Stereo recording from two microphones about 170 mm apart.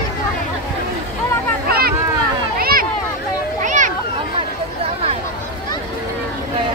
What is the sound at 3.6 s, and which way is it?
Children playing, 45° right (ahead or behind).